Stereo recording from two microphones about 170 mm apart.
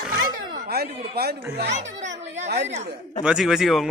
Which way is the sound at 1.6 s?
45° right (ahead or behind).